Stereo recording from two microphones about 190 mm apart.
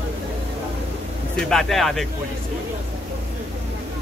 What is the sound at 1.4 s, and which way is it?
Speech, centre (ahead or behind).